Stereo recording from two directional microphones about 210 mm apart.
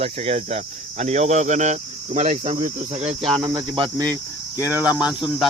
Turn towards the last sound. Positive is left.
turn(degrees=0)  # may be behind; listen again after turning